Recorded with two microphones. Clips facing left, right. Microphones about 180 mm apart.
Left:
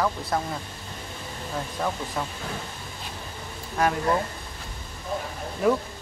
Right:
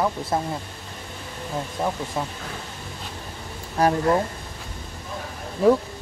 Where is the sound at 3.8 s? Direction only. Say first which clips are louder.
Right 4 dB; 35° right (ahead or behind).